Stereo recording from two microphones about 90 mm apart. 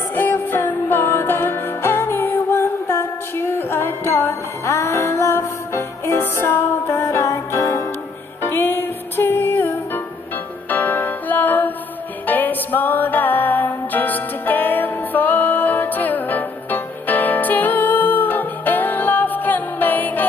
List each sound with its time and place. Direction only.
0.1 s music: 20° left (ahead or behind)